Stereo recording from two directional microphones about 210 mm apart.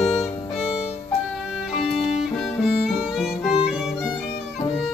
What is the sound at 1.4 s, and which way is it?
Violin, centre (ahead or behind).